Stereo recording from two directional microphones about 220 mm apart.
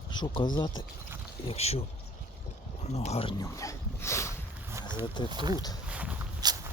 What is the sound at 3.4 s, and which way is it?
Dog, 15° left (ahead or behind).